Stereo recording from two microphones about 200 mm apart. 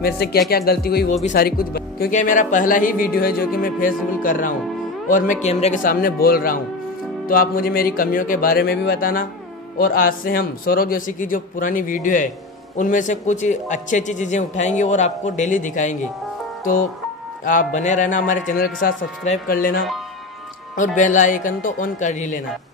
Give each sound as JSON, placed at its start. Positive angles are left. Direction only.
{"t": 0.0, "sound": "a man's voice", "side_deg": 50}
{"t": 17.5, "sound": "a man's voice", "side_deg": 40}